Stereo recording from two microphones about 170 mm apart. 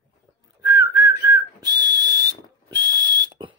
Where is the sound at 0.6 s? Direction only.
20° right (ahead or behind).